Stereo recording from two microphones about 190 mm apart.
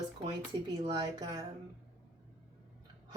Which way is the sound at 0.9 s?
20° right (ahead or behind).